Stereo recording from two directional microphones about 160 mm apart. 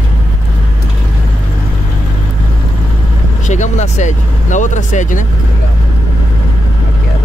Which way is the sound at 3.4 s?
50° left (ahead or behind).